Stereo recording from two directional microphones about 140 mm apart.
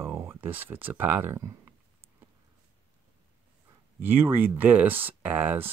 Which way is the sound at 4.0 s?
15° right (ahead or behind).